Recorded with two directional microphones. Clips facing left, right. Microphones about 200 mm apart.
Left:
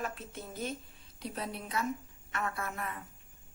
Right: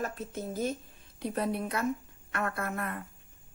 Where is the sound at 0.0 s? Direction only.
45° right (ahead or behind).